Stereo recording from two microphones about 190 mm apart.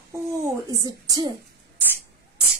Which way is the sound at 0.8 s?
20° right (ahead or behind).